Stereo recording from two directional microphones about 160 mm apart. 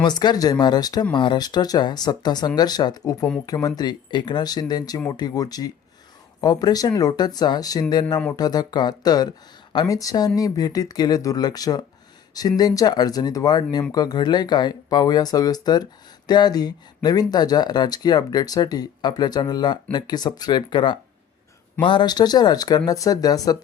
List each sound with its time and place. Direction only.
0.0 s speech: 25° left (ahead or behind)